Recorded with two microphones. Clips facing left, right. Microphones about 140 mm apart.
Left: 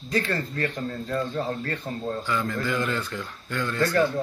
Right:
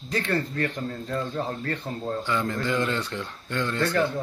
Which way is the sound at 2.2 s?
25° right (ahead or behind).